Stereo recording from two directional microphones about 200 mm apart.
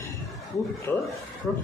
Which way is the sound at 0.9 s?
10° left (ahead or behind).